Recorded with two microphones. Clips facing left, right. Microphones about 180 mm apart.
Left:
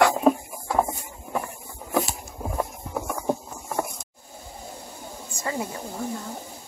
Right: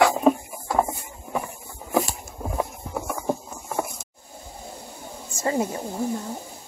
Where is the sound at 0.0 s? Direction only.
Centre (ahead or behind).